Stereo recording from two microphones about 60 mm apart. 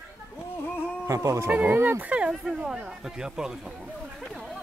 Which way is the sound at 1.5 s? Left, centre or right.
Right.